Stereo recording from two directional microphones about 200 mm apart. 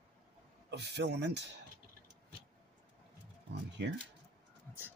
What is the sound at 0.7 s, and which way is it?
Speech, 60° right (ahead or behind).